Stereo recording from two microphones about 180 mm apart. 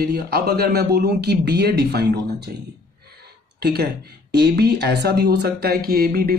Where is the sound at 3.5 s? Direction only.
65° right (ahead or behind).